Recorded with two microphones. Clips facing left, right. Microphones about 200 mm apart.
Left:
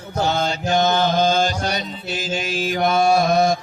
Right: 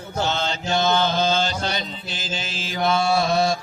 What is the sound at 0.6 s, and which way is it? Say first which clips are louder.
Mantra: left 2 dB; 50° left (ahead or behind).